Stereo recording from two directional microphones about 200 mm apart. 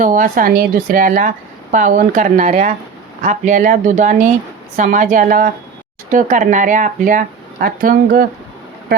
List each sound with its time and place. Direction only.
0.0 s a woman's voice: 40° right (ahead or behind)